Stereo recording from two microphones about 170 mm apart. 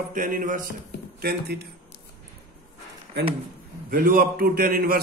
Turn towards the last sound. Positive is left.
turn(degrees=-60)  # may be behind; listen again after turning